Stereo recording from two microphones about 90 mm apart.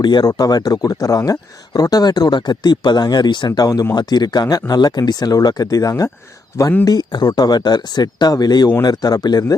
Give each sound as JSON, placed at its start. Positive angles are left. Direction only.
{"t": 0.0, "sound": "speech", "side_deg": 55}
{"t": 6.8, "sound": "speech", "side_deg": 50}